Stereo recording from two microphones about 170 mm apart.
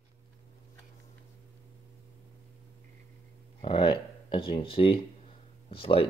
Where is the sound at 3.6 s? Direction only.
30° left (ahead or behind).